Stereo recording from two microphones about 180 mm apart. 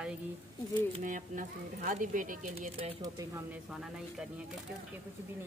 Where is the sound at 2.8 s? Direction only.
20° right (ahead or behind).